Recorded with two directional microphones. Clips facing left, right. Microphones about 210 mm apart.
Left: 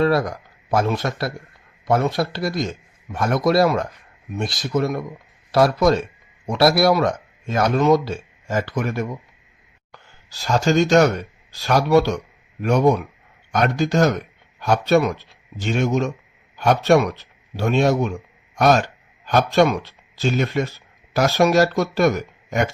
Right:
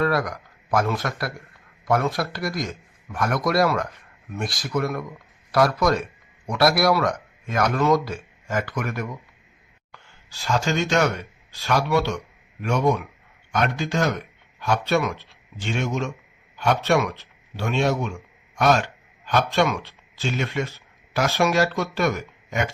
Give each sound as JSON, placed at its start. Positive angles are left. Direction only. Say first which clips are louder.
{"t": 0.0, "sound": "a man's voice", "louder": "left 4 dB", "side_deg": 25}
{"t": 9.9, "sound": "a man's voice", "louder": "left 2 dB", "side_deg": 40}